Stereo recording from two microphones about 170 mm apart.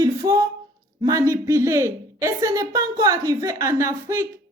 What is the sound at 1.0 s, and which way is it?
A woman's voice, 20° right (ahead or behind).